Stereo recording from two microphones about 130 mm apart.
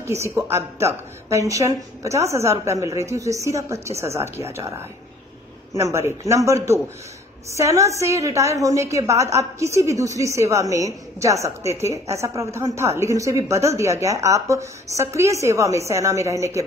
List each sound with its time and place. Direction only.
0.0 s a woman's voice: 20° right (ahead or behind)